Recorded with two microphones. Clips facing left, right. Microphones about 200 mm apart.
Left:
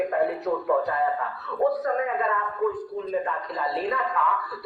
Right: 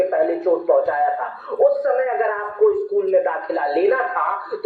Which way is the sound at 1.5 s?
50° right (ahead or behind).